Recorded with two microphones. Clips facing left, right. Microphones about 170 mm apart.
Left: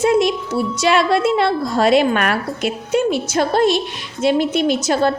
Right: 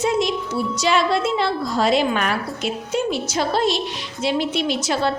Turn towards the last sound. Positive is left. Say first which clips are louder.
# left 5 dB
turn(degrees=45)  # may be behind; listen again after turning